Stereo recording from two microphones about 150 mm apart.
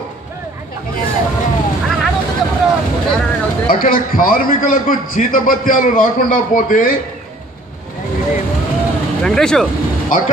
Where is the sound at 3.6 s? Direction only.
70° left (ahead or behind).